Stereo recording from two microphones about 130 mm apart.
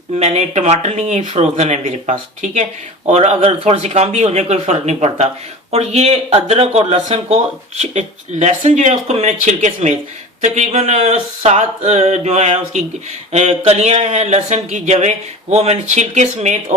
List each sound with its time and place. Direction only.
0.2 s speech: 60° right (ahead or behind)